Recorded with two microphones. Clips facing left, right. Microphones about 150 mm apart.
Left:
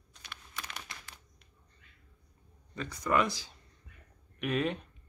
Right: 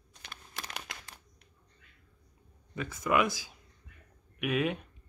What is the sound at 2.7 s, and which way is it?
Speech, 5° right (ahead or behind).